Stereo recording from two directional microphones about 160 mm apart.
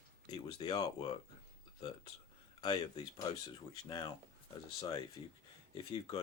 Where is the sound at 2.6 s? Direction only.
25° left (ahead or behind).